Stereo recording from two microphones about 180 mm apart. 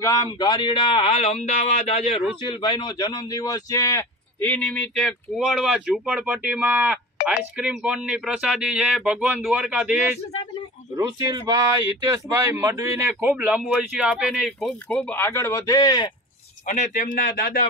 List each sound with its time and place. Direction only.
0.0 s speech: 20° left (ahead or behind); by 9.9 s 5° right (ahead or behind)
11.0 s speech: 20° right (ahead or behind); by 16.1 s 20° left (ahead or behind)
16.6 s a man's voice: 40° left (ahead or behind)